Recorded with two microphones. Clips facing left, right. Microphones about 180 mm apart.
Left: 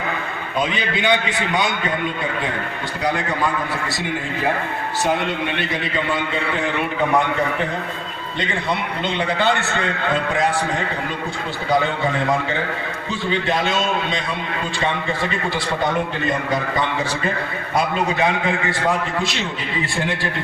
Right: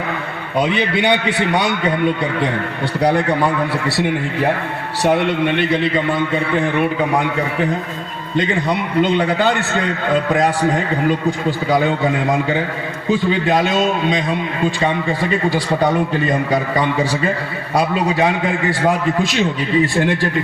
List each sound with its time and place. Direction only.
0.6 s a man's voice: 65° right (ahead or behind)
3.0 s a man's voice: 65° right (ahead or behind)
5.0 s a man's voice: 60° right (ahead or behind)
9.0 s a man's voice: 40° right (ahead or behind)
11.3 s a man's voice: 45° right (ahead or behind)
13.1 s a man's voice: 45° right (ahead or behind)
16.5 s a man's voice: 45° right (ahead or behind)